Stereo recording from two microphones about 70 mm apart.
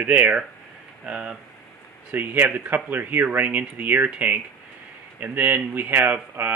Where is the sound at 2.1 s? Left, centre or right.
Right.